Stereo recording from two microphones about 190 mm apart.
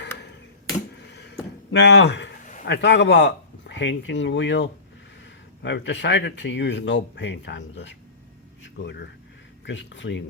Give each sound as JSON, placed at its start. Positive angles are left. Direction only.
{"t": 1.7, "sound": "speech", "side_deg": 65}